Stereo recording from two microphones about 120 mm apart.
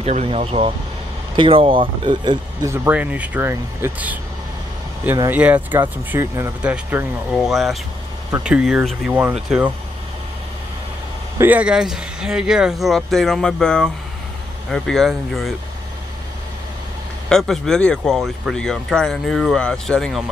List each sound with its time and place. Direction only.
0.0 s speech: 60° right (ahead or behind)
1.3 s speech: 45° right (ahead or behind)
2.6 s speech: 20° right (ahead or behind)
5.3 s speech: 15° right (ahead or behind)
6.6 s speech: 10° right (ahead or behind)
11.3 s speech: 15° right (ahead or behind)
17.3 s speech: 5° left (ahead or behind)